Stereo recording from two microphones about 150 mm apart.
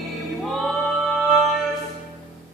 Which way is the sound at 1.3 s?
Centre (ahead or behind).